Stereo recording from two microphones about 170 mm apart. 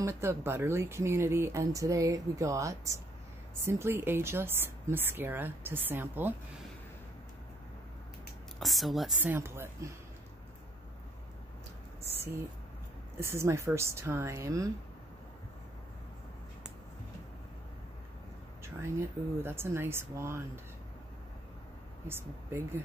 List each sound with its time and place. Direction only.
0.0 s speech: 15° right (ahead or behind)
8.5 s a woman's voice: centre (ahead or behind); by 9.9 s 15° right (ahead or behind)
13.2 s speech: 15° right (ahead or behind)
18.6 s speech: 15° right (ahead or behind)
22.0 s speech: 15° right (ahead or behind)